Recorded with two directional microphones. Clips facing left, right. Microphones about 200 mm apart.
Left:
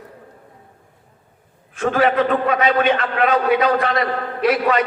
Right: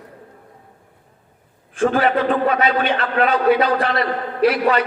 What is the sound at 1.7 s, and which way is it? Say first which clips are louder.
A man's voice: even; 30° right (ahead or behind).